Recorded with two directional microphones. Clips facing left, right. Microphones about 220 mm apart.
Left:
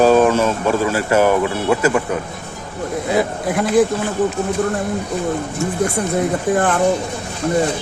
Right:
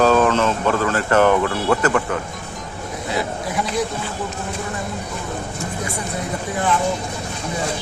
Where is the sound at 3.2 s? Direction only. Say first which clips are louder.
Left 5 dB; 50° left (ahead or behind).